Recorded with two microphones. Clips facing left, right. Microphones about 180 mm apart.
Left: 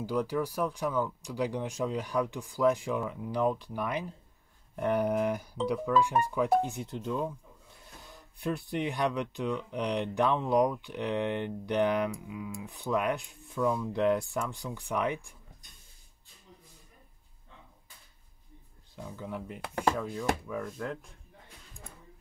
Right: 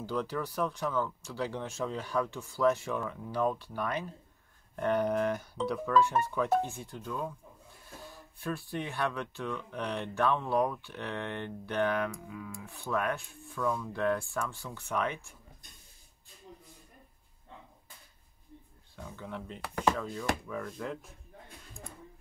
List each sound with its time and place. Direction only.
0.0 s speech: 10° left (ahead or behind)
8.4 s speech: 20° left (ahead or behind)
18.9 s speech: 10° left (ahead or behind)